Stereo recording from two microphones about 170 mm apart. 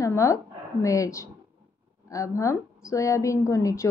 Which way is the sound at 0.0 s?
20° left (ahead or behind).